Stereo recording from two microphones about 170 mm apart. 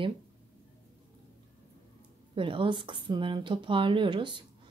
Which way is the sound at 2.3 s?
30° right (ahead or behind).